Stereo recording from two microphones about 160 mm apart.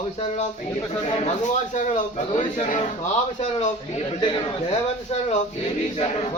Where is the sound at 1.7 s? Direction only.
50° left (ahead or behind).